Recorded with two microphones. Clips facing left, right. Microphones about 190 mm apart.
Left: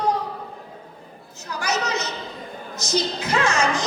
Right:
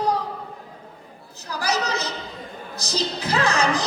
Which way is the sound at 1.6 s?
35° right (ahead or behind).